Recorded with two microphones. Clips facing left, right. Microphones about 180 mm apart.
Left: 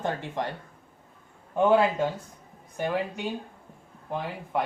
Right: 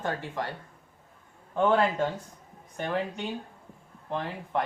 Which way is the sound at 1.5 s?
10° left (ahead or behind).